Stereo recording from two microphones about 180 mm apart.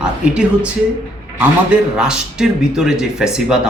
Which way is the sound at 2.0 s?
5° right (ahead or behind).